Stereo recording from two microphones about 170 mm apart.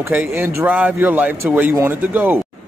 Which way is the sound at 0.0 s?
10° right (ahead or behind).